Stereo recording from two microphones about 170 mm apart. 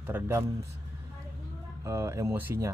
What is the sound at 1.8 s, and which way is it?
Speech, 15° right (ahead or behind).